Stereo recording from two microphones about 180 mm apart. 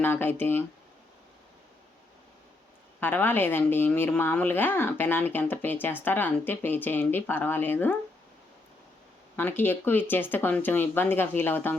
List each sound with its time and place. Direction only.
0.0 s speech: 10° left (ahead or behind)
3.0 s speech: 10° left (ahead or behind)
9.3 s speech: 10° left (ahead or behind)